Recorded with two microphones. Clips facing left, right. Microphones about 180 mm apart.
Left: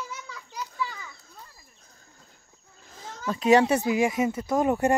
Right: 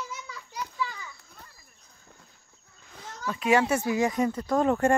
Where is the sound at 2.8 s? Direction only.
35° left (ahead or behind); by 5.0 s 15° left (ahead or behind).